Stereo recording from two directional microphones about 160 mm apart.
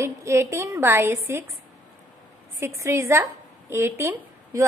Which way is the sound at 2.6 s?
15° right (ahead or behind).